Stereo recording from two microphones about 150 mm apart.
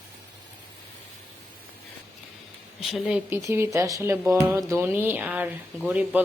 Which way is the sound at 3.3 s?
20° right (ahead or behind).